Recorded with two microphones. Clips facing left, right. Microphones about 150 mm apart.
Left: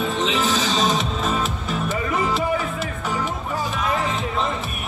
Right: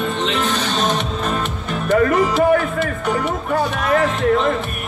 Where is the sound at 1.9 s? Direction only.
75° right (ahead or behind).